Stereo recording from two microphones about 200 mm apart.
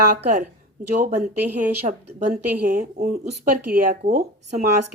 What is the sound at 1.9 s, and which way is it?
A woman's voice, 40° right (ahead or behind).